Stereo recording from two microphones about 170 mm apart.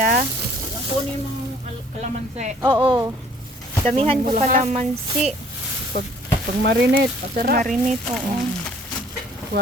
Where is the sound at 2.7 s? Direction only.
25° right (ahead or behind).